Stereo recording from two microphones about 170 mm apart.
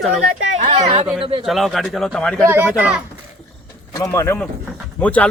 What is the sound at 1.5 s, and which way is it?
Speech, centre (ahead or behind).